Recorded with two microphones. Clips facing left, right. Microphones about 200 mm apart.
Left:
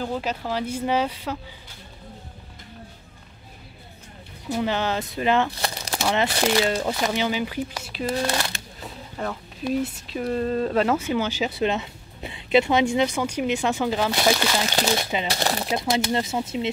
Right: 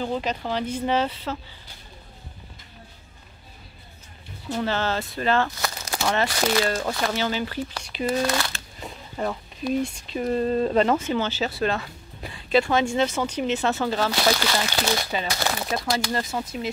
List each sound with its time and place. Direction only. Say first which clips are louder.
0.0 s speech: right 1 dB; 5° left (ahead or behind)
4.5 s speech: left 1 dB; 15° left (ahead or behind)
8.7 s a sound: right 1 dB; 5° right (ahead or behind)
9.7 s speech: even; 5° left (ahead or behind)
15.2 s speech: left 2 dB; 30° left (ahead or behind)
15.7 s speech: left 3 dB; 20° left (ahead or behind)